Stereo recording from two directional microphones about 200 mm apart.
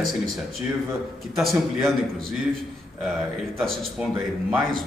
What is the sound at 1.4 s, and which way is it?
Speech, centre (ahead or behind).